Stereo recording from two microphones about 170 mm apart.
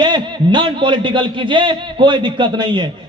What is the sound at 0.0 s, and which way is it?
A man's voice, 25° right (ahead or behind).